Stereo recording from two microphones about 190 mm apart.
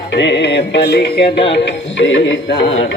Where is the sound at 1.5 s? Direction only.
75° left (ahead or behind).